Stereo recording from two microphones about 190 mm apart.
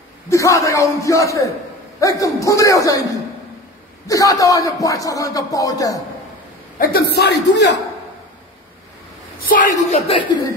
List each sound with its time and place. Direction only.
0.3 s speech: 15° left (ahead or behind)
4.1 s speech: 20° left (ahead or behind)
6.8 s a man's voice: 55° left (ahead or behind)
10.0 s speech: 25° left (ahead or behind)